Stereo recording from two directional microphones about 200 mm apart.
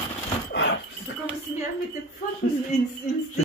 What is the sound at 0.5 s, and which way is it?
Dog, 60° left (ahead or behind).